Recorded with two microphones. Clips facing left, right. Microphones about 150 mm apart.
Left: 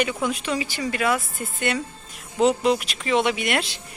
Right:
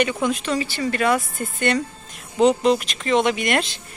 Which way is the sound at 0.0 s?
5° left (ahead or behind).